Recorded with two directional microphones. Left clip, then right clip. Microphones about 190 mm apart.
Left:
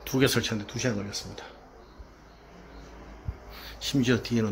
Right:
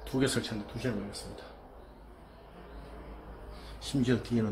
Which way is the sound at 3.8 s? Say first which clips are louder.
Left 5 dB; 20° left (ahead or behind).